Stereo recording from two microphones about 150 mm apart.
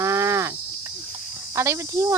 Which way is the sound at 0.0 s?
20° right (ahead or behind).